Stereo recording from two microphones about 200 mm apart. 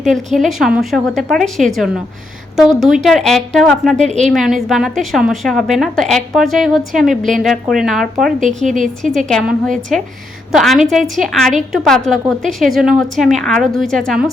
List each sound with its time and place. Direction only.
0.0 s a woman's voice: centre (ahead or behind)
4.0 s a woman's voice: 35° right (ahead or behind)
4.3 s a woman's voice: centre (ahead or behind)
8.4 s a woman's voice: 40° right (ahead or behind)
9.1 s a woman's voice: 5° left (ahead or behind)